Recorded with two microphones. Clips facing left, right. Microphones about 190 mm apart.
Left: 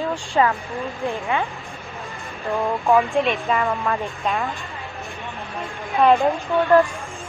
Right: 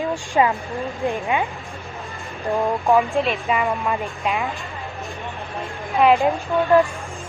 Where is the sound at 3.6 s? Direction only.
10° right (ahead or behind).